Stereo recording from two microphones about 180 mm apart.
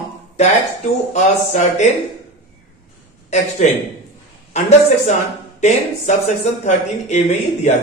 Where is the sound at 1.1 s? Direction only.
40° left (ahead or behind).